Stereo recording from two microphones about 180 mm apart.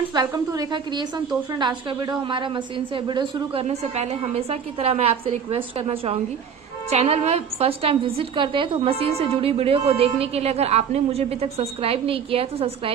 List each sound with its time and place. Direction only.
0.1 s a woman's voice: 20° right (ahead or behind)